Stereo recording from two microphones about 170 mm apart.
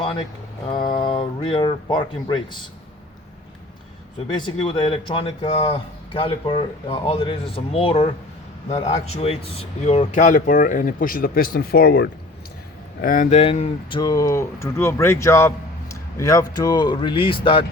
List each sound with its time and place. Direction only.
0.0 s a sound: 30° left (ahead or behind)
0.9 s speech: 30° left (ahead or behind)
4.3 s speech: 25° left (ahead or behind); by 12.0 s 65° left (ahead or behind)
13.0 s speech: 55° left (ahead or behind)
13.3 s speech: 35° left (ahead or behind)